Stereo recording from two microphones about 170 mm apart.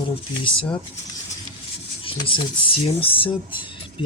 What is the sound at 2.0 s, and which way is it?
Speech, 30° left (ahead or behind).